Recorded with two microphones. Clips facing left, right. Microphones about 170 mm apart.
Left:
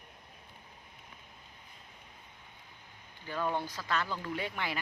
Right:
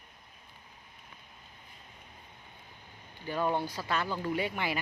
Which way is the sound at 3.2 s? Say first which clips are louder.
Right 3 dB; 20° right (ahead or behind).